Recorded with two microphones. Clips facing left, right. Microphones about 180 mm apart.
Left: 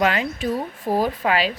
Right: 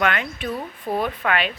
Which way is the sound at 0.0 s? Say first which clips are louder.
Left 3 dB; 30° left (ahead or behind).